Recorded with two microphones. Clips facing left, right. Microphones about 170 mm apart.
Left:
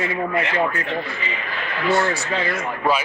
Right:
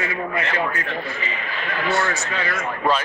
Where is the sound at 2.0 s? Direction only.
30° left (ahead or behind).